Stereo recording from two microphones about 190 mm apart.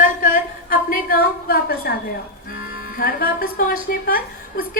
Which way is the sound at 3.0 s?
50° left (ahead or behind).